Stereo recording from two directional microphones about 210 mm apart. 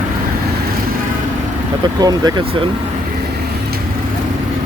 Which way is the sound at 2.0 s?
20° right (ahead or behind).